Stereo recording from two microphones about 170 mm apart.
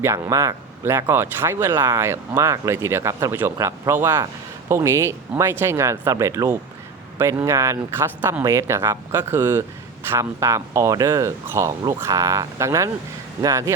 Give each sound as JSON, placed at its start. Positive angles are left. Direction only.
{"t": 0.0, "sound": "speech", "side_deg": -15}